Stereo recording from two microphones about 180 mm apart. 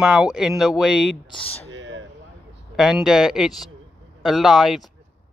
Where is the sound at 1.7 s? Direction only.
90° right.